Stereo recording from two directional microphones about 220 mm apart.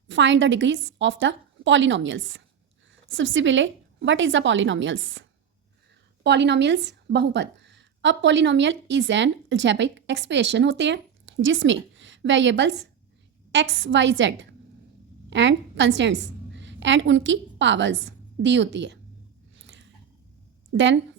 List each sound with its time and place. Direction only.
0.1 s a woman's voice: 55° right (ahead or behind)
6.2 s a woman's voice: 50° right (ahead or behind)
19.5 s a sound: 55° right (ahead or behind)
20.7 s a woman's voice: 55° right (ahead or behind)